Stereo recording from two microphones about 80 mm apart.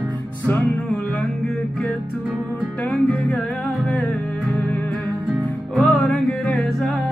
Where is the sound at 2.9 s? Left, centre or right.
Centre.